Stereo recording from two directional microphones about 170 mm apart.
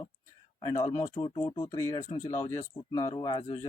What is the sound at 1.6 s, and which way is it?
Speech, 20° left (ahead or behind).